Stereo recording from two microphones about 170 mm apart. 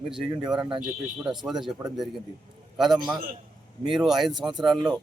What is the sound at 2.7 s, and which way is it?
A man's voice, centre (ahead or behind).